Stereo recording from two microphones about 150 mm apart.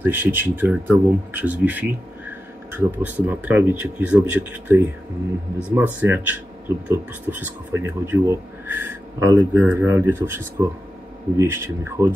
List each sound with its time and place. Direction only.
0.0 s speech: 15° right (ahead or behind)
5.9 s speech: 10° right (ahead or behind)